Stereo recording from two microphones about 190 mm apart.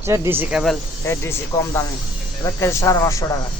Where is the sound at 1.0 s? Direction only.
15° left (ahead or behind).